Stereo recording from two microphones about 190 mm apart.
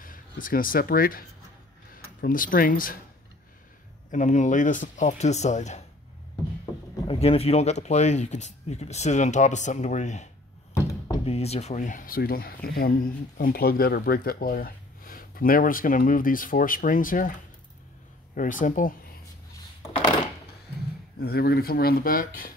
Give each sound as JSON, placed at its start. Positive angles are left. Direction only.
{"t": 0.0, "sound": "speech", "side_deg": 45}
{"t": 4.1, "sound": "speech", "side_deg": 40}
{"t": 7.1, "sound": "speech", "side_deg": 30}
{"t": 10.7, "sound": "thunk", "side_deg": 15}
{"t": 11.2, "sound": "speech", "side_deg": 35}
{"t": 18.3, "sound": "speech", "side_deg": 45}
{"t": 21.2, "sound": "speech", "side_deg": 55}